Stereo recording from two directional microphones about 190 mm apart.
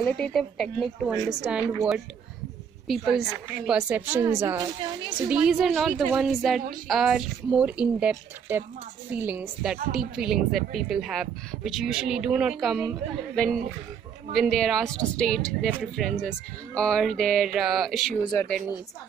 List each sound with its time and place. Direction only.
0.0 s a woman's voice: centre (ahead or behind); by 5.1 s 20° right (ahead or behind)
5.3 s a woman's voice: 5° right (ahead or behind)
14.3 s speech: centre (ahead or behind)
18.2 s speech: 20° left (ahead or behind)